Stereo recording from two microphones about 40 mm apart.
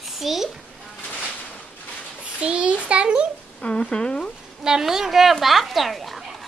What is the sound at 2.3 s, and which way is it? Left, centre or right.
Speech, right.